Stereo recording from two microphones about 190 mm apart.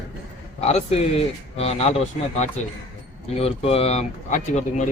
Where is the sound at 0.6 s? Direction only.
35° left (ahead or behind).